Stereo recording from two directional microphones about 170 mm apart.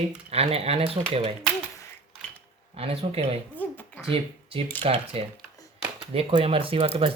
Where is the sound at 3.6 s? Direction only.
10° left (ahead or behind).